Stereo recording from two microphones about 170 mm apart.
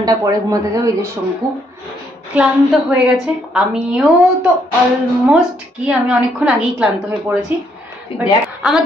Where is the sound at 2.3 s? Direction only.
10° right (ahead or behind).